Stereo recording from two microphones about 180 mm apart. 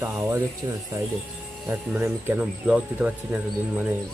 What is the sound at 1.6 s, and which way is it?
Speech, 10° right (ahead or behind).